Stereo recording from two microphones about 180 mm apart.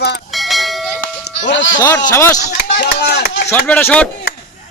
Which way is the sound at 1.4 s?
85° left.